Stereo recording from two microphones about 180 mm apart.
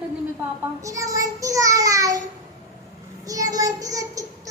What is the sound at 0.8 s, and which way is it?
A child's voice, 20° right (ahead or behind).